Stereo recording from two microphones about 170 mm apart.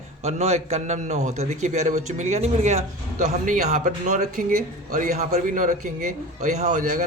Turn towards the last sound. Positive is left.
turn(degrees=-45)  # may be behind; listen again after turning